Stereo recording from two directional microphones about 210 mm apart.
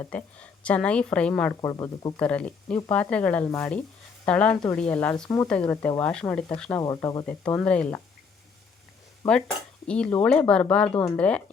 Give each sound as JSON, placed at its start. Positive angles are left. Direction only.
{"t": 0.0, "sound": "a woman's voice", "side_deg": 5}
{"t": 1.7, "sound": "speech", "side_deg": 20}
{"t": 2.1, "sound": "a woman's voice", "side_deg": 5}
{"t": 6.8, "sound": "speech", "side_deg": 20}
{"t": 7.3, "sound": "a woman's voice", "side_deg": 5}
{"t": 9.8, "sound": "a woman's voice", "side_deg": 5}